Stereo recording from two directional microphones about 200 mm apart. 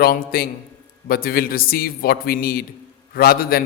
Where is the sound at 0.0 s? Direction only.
50° left (ahead or behind).